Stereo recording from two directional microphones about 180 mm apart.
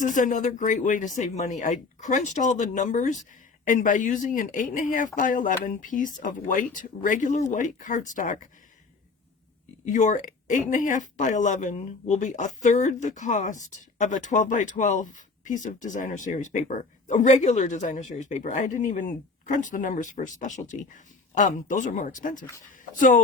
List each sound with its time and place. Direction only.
0.0 s speech: 45° left (ahead or behind)
9.8 s speech: 45° left (ahead or behind)